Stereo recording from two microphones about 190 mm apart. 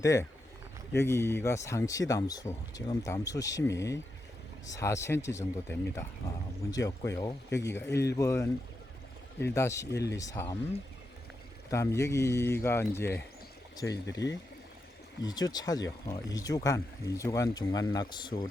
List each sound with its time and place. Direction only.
0.0 s speech: 15° left (ahead or behind)
11.7 s speech: 15° left (ahead or behind)
14.2 s speech: 70° left (ahead or behind)
15.2 s speech: 20° left (ahead or behind)